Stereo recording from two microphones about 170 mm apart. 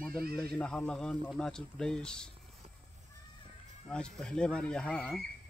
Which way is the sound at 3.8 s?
5° left (ahead or behind).